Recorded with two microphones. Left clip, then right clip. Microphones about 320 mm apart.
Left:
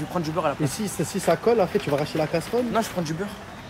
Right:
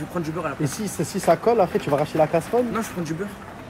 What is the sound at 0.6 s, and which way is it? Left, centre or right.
Speech, centre.